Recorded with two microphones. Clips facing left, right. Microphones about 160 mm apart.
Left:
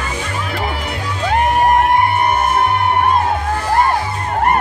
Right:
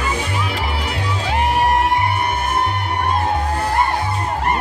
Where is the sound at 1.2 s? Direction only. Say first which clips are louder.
Left 4 dB; 50° left (ahead or behind).